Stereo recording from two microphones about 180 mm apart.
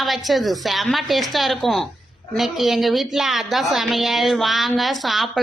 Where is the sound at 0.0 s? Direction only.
Centre (ahead or behind).